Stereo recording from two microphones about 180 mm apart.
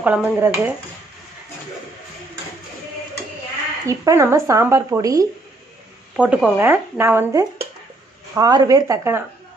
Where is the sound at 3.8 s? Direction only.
15° right (ahead or behind).